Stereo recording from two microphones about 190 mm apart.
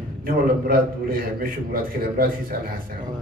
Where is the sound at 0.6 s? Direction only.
50° right (ahead or behind).